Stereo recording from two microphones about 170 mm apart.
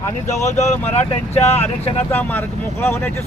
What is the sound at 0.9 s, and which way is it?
Speech, 40° left (ahead or behind).